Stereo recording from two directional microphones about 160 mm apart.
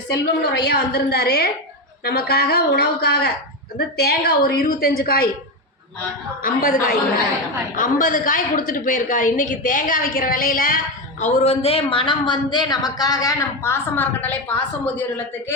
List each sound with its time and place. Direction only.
0.1 s a woman's voice: 90° left; by 5.3 s 70° left (ahead or behind)
6.4 s a woman's voice: 60° left (ahead or behind)
11.2 s speech: 45° left (ahead or behind); by 14.5 s 10° left (ahead or behind)